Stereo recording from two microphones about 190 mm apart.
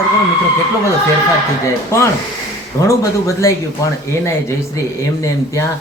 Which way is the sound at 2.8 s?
15° left (ahead or behind).